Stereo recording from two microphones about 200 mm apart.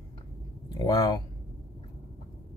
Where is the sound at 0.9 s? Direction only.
20° left (ahead or behind).